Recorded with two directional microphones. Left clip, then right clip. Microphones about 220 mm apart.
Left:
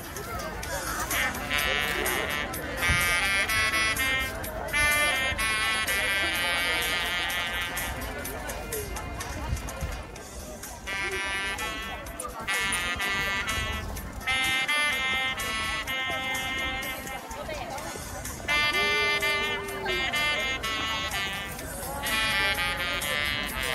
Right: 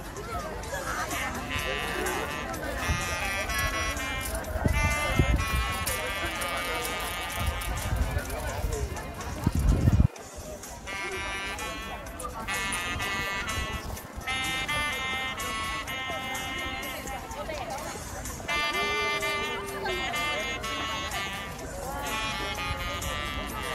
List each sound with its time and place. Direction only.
0.7 s music: 35° left (ahead or behind)
4.7 s sheep: 30° left (ahead or behind)
10.9 s music: 30° left (ahead or behind)
18.5 s music: 30° left (ahead or behind)